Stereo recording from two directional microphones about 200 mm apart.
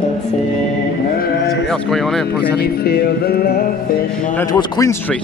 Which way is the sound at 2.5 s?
50° left (ahead or behind).